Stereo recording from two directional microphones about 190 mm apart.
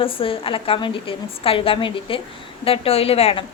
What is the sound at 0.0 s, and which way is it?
A woman's voice, 30° left (ahead or behind).